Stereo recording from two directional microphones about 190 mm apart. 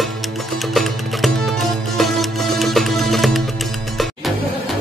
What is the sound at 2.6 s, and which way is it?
Music, centre (ahead or behind).